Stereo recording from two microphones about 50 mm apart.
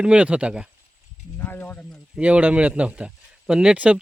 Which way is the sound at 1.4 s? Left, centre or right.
Left.